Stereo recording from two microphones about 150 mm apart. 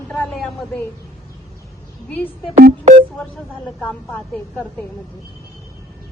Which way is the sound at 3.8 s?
10° left (ahead or behind).